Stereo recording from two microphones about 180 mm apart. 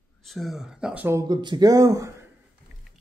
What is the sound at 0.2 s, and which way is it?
Speech, centre (ahead or behind).